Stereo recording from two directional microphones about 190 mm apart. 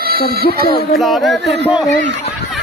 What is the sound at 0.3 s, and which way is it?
Speech, 55° right (ahead or behind).